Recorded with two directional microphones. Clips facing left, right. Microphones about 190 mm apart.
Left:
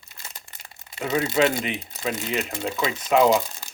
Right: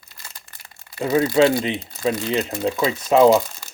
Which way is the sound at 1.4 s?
30° right (ahead or behind).